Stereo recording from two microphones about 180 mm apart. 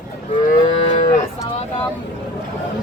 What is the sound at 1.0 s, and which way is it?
Cattle, 40° left (ahead or behind).